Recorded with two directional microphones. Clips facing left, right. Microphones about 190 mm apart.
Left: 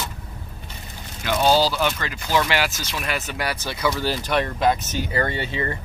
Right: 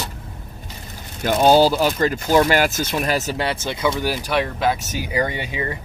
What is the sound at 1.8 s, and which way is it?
Speech, 40° right (ahead or behind).